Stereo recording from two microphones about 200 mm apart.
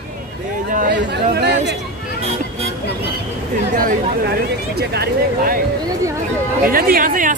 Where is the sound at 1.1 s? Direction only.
55° right (ahead or behind).